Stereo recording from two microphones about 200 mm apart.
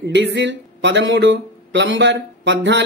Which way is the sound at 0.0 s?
60° right (ahead or behind).